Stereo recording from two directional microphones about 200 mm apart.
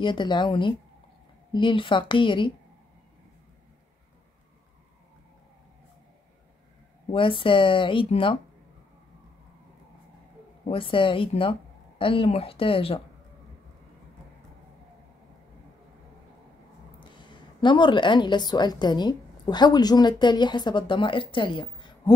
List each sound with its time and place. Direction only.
0.0 s speech: 25° left (ahead or behind)
7.1 s speech: 25° left (ahead or behind)
10.6 s speech: 25° left (ahead or behind)
17.0 s a woman's voice: 25° left (ahead or behind)